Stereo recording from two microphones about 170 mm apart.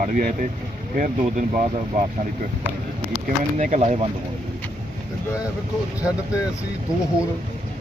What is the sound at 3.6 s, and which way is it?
Speech, 45° right (ahead or behind).